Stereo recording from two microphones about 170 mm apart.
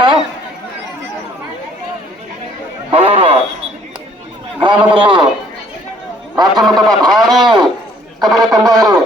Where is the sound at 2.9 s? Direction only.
35° right (ahead or behind).